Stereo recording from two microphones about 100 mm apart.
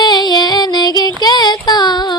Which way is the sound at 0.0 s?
45° left (ahead or behind).